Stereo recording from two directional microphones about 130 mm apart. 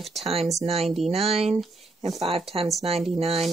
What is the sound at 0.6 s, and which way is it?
Speech, 50° right (ahead or behind).